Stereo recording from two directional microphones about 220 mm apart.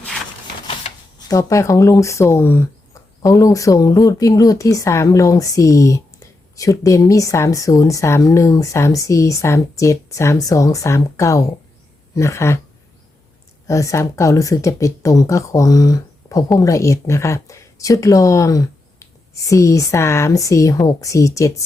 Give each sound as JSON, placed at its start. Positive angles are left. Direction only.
{"t": 0.7, "sound": "typewriter", "side_deg": 25}
{"t": 1.4, "sound": "a woman's voice", "side_deg": 15}
{"t": 13.7, "sound": "a woman's voice", "side_deg": 15}